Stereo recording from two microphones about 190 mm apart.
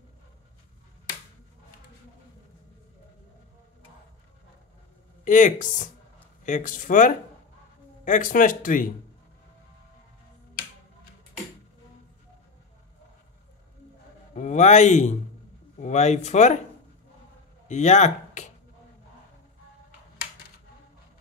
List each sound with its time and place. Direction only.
5.2 s speech: 40° left (ahead or behind)
14.3 s speech: 40° left (ahead or behind)
17.6 s speech: 40° left (ahead or behind)